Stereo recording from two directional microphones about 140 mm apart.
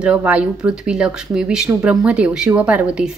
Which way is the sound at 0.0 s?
10° right (ahead or behind).